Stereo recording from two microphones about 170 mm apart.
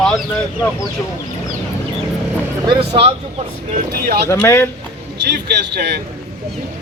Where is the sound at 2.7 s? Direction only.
35° right (ahead or behind).